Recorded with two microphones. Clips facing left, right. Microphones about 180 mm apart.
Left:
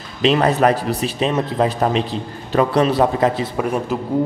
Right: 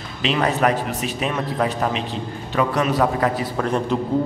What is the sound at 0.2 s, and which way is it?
Speech, 35° left (ahead or behind).